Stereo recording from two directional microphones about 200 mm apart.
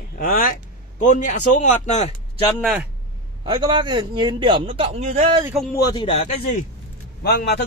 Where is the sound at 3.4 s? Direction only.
20° right (ahead or behind).